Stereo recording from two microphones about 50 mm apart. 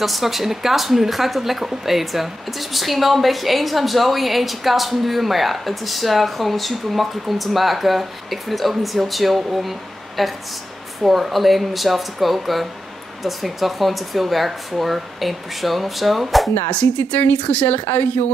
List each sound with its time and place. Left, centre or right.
0.0 s a woman's voice: centre
16.7 s a woman's voice: left